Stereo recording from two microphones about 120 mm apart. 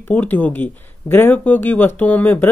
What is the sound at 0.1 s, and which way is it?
Speech, 15° left (ahead or behind).